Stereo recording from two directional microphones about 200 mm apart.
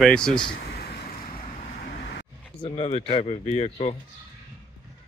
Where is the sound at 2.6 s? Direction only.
30° left (ahead or behind).